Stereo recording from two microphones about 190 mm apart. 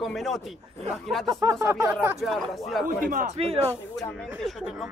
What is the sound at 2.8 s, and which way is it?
Speech, 50° right (ahead or behind).